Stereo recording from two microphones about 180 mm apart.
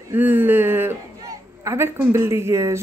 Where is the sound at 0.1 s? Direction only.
10° right (ahead or behind).